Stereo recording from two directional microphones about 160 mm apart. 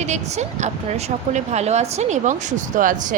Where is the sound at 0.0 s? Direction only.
45° right (ahead or behind).